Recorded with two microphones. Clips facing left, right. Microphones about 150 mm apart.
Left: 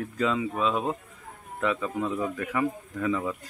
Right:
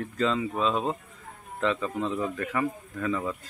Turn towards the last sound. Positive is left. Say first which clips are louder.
# left 2 dB
turn(degrees=10)  # may be behind; listen again after turning